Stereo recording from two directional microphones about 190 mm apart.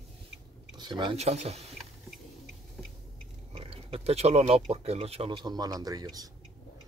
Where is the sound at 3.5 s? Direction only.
30° right (ahead or behind).